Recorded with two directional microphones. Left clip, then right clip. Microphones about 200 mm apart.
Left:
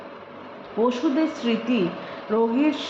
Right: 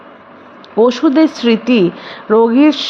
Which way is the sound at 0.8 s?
55° right (ahead or behind).